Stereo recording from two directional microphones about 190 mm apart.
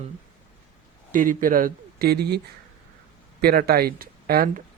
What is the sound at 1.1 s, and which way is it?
Speech, 45° right (ahead or behind).